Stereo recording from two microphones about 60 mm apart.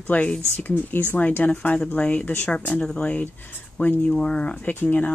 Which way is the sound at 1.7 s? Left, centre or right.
Centre.